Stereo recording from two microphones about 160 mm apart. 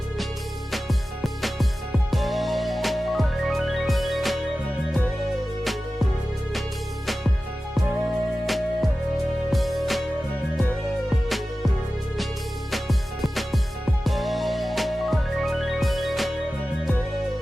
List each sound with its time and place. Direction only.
0.7 s music: centre (ahead or behind)
8.4 s music: centre (ahead or behind)
12.7 s music: centre (ahead or behind)